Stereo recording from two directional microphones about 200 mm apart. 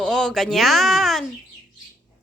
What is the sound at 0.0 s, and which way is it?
Speech, 5° left (ahead or behind).